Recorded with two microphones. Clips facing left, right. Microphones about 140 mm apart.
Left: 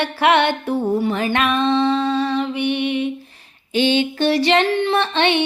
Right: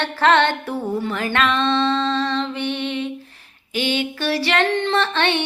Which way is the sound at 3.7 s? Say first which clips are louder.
Left 5 dB; 25° left (ahead or behind).